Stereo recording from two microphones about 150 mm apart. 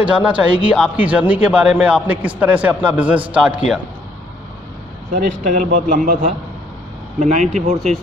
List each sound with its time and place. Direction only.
0.0 s speech: 10° right (ahead or behind)
5.1 s a man's voice: 65° right (ahead or behind)